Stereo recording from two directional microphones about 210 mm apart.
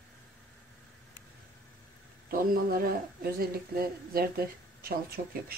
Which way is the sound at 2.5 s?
45° right (ahead or behind).